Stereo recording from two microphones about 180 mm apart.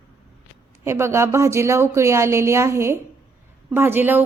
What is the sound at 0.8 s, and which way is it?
A woman's voice, 15° right (ahead or behind).